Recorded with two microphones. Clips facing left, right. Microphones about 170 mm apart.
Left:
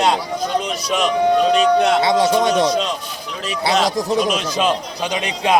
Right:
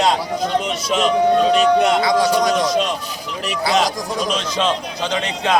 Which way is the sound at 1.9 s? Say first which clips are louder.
Left 1 dB; 25° left (ahead or behind).